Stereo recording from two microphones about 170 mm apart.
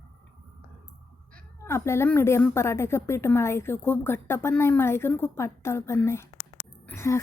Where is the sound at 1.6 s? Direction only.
15° left (ahead or behind).